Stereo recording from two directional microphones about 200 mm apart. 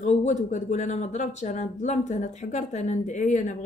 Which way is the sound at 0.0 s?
35° left (ahead or behind).